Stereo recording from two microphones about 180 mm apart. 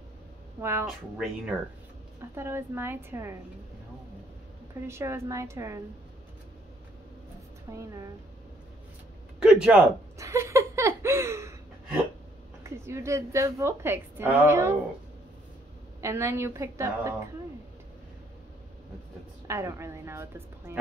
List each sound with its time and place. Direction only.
0.6 s a woman's voice: 15° right (ahead or behind)
0.8 s speech: centre (ahead or behind)
2.3 s a woman's voice: 15° right (ahead or behind)
4.8 s a woman's voice: 15° right (ahead or behind)
7.7 s speech: 20° right (ahead or behind)
9.4 s speech: 5° right (ahead or behind)
10.1 s a sound: 15° right (ahead or behind)
12.6 s a woman's voice: 15° right (ahead or behind)
16.0 s a woman's voice: 15° right (ahead or behind)
19.4 s a woman's voice: 15° right (ahead or behind)